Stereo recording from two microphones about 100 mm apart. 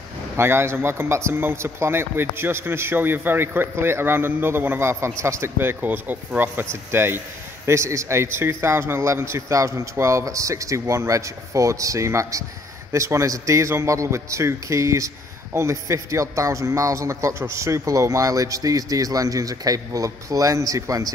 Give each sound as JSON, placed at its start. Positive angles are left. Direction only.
{"t": 0.4, "sound": "a man's voice", "side_deg": -25}